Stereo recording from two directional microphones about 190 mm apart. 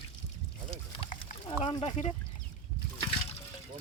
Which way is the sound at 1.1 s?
40° left (ahead or behind).